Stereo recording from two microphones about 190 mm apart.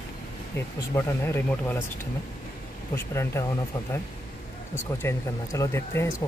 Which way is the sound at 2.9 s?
15° left (ahead or behind).